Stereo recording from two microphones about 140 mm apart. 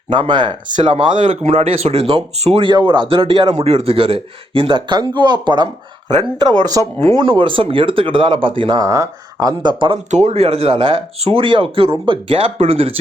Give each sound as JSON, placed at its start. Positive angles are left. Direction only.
{"t": 0.1, "sound": "speech", "side_deg": -35}
{"t": 10.1, "sound": "speech", "side_deg": -55}